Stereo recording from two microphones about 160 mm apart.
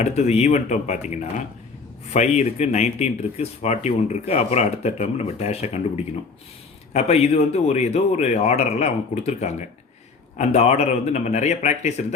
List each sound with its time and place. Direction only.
0.0 s speech: 45° left (ahead or behind)
6.9 s speech: 40° left (ahead or behind)